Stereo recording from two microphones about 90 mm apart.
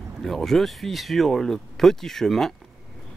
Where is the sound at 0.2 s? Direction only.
5° left (ahead or behind).